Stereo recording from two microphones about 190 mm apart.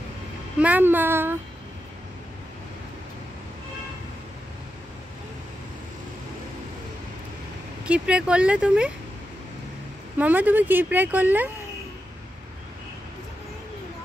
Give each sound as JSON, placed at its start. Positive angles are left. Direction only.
{"t": 0.6, "sound": "speech", "side_deg": -10}
{"t": 7.8, "sound": "speech", "side_deg": -5}
{"t": 10.1, "sound": "speech", "side_deg": -10}